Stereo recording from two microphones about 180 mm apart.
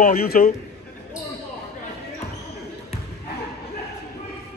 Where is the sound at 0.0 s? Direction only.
55° left (ahead or behind).